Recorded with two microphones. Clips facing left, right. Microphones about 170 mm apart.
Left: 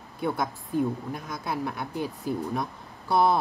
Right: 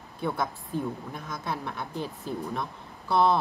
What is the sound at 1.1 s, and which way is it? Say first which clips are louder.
Speech: left 2 dB; 5° left (ahead or behind).